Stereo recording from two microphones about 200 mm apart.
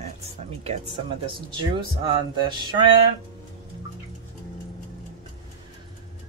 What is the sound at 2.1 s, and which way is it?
Male singing, 25° right (ahead or behind).